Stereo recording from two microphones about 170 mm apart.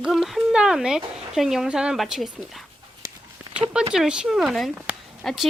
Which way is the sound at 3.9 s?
5° right (ahead or behind).